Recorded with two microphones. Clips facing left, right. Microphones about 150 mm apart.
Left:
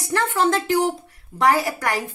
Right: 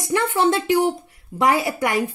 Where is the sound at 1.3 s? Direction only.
20° right (ahead or behind).